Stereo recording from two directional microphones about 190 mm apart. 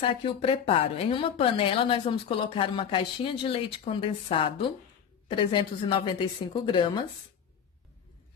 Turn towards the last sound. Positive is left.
turn(degrees=25)  # may be behind; listen again after turning